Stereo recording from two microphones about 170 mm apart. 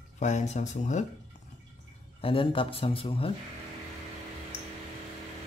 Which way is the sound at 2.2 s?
30° left (ahead or behind).